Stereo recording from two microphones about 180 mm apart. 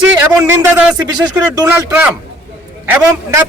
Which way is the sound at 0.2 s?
10° right (ahead or behind).